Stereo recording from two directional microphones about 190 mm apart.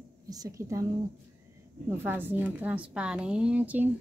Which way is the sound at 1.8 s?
10° right (ahead or behind).